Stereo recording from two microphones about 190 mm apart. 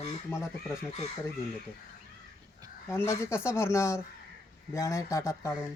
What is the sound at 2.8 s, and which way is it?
Speech, 15° left (ahead or behind).